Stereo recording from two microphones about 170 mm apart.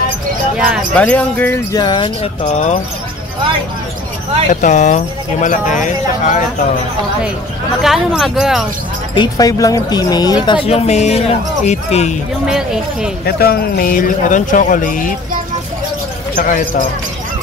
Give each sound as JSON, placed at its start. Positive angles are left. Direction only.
{"t": 0.9, "sound": "speech", "side_deg": 10}
{"t": 1.8, "sound": "speech", "side_deg": 25}
{"t": 2.4, "sound": "speech", "side_deg": 40}
{"t": 4.5, "sound": "speech", "side_deg": 50}
{"t": 7.8, "sound": "speech", "side_deg": 0}
{"t": 9.1, "sound": "speech", "side_deg": 25}
{"t": 12.4, "sound": "speech", "side_deg": -5}
{"t": 13.2, "sound": "speech", "side_deg": 65}
{"t": 16.3, "sound": "speech", "side_deg": 50}